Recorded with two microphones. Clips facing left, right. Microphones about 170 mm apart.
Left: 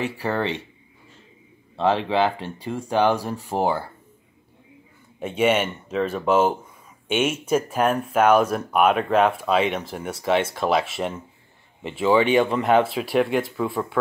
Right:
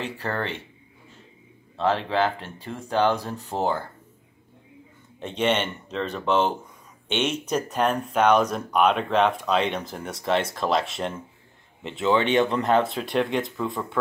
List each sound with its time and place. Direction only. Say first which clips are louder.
0.0 s speech: left 4 dB; 15° left (ahead or behind)
1.8 s speech: left 3 dB; 15° left (ahead or behind)
5.2 s speech: left 3 dB; 10° left (ahead or behind)